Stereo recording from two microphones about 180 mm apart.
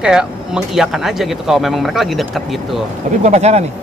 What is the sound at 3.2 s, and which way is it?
Speech, 40° right (ahead or behind).